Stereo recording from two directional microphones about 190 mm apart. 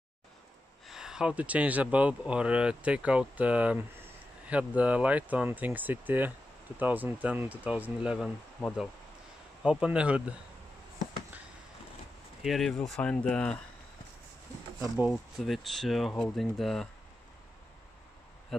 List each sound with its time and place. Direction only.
0.8 s speech: 5° right (ahead or behind)
12.4 s speech: centre (ahead or behind)
14.8 s speech: 5° right (ahead or behind)
18.5 s speech: centre (ahead or behind)